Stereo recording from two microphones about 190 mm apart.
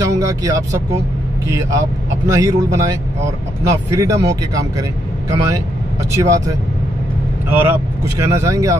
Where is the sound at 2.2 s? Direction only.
15° right (ahead or behind).